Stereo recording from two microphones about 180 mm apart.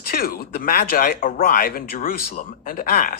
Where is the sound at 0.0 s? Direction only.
55° left (ahead or behind).